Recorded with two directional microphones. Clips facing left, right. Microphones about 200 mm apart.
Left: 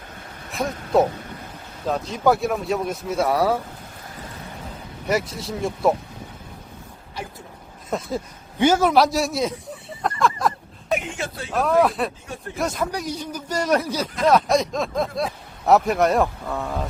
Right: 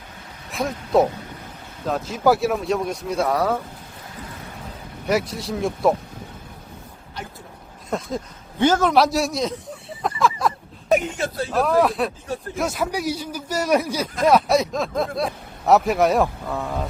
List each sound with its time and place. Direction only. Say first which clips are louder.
0.5 s speech: right 1 dB; centre (ahead or behind)
5.0 s speech: right 2 dB; centre (ahead or behind)
7.9 s speech: even; 5° left (ahead or behind)
10.0 s a sound: even; centre (ahead or behind)
10.8 s speech: right 5 dB; 40° right (ahead or behind)
11.5 s a man's voice: left 1 dB; centre (ahead or behind)